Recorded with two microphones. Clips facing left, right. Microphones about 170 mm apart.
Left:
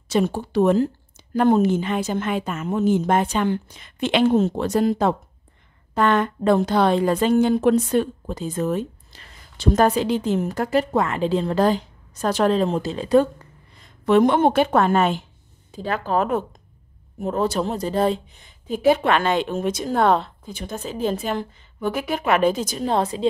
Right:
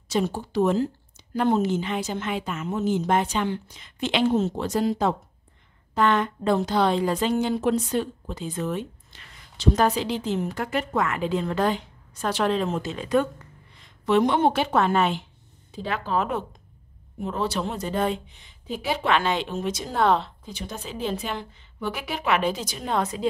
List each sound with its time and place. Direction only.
0.1 s speech: 60° left (ahead or behind); by 9.3 s 40° left (ahead or behind)
9.6 s a woman's voice: 50° left (ahead or behind); by 13.3 s 35° left (ahead or behind)
13.7 s a woman's voice: 45° left (ahead or behind); by 23.2 s 30° left (ahead or behind)